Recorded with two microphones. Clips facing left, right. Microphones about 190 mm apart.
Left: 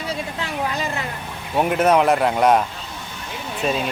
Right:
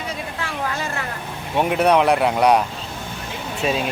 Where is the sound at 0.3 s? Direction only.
20° left (ahead or behind).